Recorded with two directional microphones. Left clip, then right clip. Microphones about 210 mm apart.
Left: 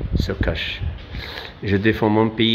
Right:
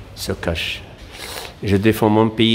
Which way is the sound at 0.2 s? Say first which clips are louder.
Right 2 dB; 15° right (ahead or behind).